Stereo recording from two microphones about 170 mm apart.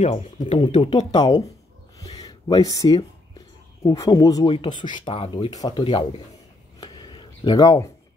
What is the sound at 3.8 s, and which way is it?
Speech, 20° left (ahead or behind).